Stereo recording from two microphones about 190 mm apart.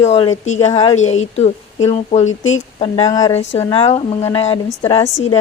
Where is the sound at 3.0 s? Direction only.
20° left (ahead or behind).